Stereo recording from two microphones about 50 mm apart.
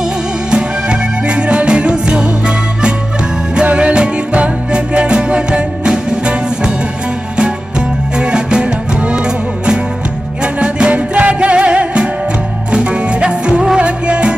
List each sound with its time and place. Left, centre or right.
0.5 s music: centre
8.2 s music: centre